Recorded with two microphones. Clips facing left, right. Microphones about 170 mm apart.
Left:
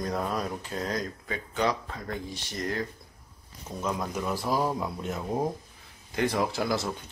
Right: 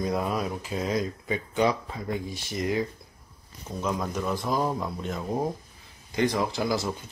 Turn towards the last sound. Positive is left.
turn(degrees=0)  # may be behind; listen again after turning